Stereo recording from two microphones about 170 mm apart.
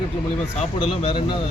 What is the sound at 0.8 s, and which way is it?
Speech, 35° left (ahead or behind).